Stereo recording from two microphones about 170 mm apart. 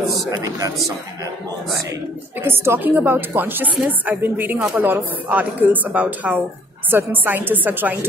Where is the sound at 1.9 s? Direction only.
15° right (ahead or behind).